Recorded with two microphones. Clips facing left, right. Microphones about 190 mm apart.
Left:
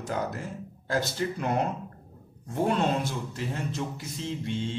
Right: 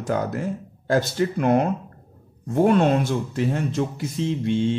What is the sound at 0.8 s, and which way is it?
Speech, 60° right (ahead or behind).